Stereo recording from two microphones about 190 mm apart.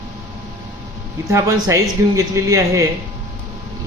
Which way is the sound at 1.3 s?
15° right (ahead or behind).